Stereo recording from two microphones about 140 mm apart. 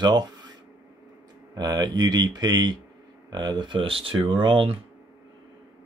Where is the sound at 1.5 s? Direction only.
30° right (ahead or behind).